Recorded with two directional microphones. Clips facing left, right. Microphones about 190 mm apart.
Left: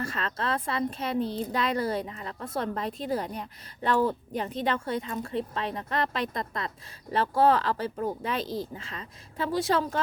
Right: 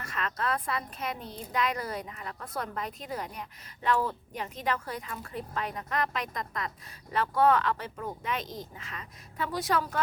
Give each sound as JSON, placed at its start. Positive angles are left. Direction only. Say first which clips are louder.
{"t": 0.0, "sound": "speech", "louder": "left 2 dB", "side_deg": 30}